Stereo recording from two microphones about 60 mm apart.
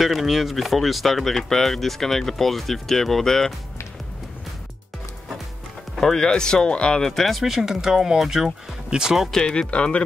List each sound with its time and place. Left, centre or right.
0.0 s speech: centre
5.9 s speech: centre
9.3 s speech: centre